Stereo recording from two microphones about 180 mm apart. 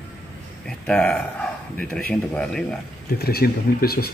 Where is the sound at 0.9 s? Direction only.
5° left (ahead or behind).